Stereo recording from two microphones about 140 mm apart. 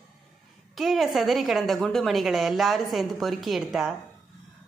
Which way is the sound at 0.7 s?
Centre (ahead or behind).